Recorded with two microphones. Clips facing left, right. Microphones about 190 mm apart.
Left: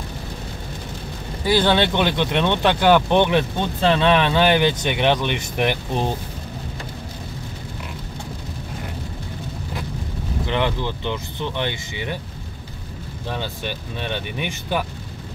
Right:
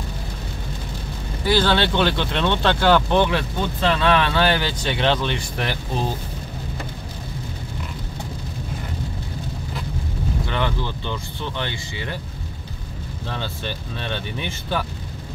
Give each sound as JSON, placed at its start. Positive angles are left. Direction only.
{"t": 1.4, "sound": "speech", "side_deg": 15}
{"t": 10.4, "sound": "speech", "side_deg": 20}
{"t": 13.3, "sound": "speech", "side_deg": 15}